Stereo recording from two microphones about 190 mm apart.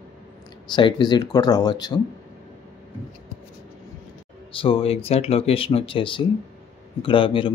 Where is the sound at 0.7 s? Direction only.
25° left (ahead or behind).